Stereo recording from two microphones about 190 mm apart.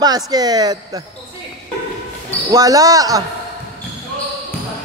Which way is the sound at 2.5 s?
20° right (ahead or behind).